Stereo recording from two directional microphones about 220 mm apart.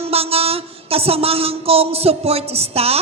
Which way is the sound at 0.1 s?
25° right (ahead or behind).